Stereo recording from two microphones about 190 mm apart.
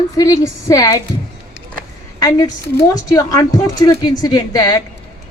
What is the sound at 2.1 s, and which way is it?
A woman's voice, 20° left (ahead or behind).